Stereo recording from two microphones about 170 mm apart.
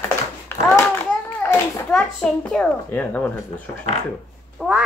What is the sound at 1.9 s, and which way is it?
A child's voice, 5° left (ahead or behind).